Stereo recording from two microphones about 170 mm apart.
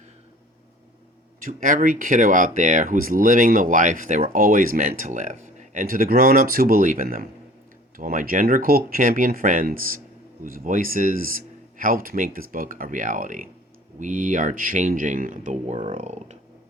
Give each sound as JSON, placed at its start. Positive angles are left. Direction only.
{"t": 1.4, "sound": "speech", "side_deg": -50}